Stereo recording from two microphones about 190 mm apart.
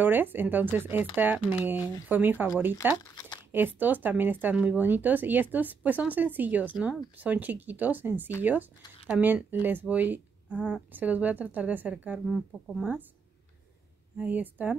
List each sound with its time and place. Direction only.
0.0 s speech: 10° right (ahead or behind)
1.8 s speech: 20° left (ahead or behind)
2.0 s speech: 10° right (ahead or behind)
3.1 s crumpling: 20° left (ahead or behind)
3.5 s speech: 10° right (ahead or behind)
14.1 s speech: 10° right (ahead or behind)